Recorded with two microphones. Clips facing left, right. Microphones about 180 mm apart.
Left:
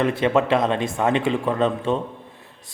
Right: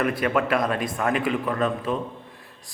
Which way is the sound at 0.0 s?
25° left (ahead or behind).